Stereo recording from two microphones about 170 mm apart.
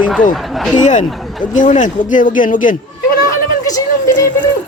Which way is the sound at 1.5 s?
50° left (ahead or behind).